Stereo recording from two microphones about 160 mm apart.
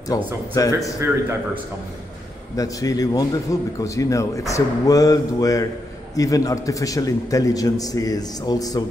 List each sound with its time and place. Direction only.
0.1 s a man's voice: 20° left (ahead or behind)
2.5 s a man's voice: 20° left (ahead or behind)